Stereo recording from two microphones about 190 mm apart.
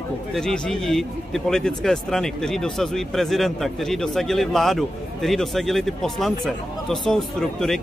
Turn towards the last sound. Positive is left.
turn(degrees=5)  # may be behind; listen again after turning